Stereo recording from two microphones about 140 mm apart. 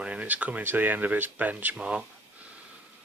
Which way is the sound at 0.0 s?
10° right (ahead or behind).